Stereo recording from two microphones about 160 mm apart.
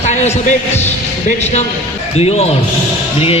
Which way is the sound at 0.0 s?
45° left (ahead or behind).